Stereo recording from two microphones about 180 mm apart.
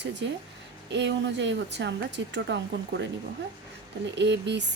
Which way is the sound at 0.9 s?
80° right.